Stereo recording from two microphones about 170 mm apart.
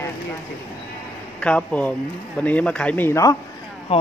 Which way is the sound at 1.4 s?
5° left (ahead or behind).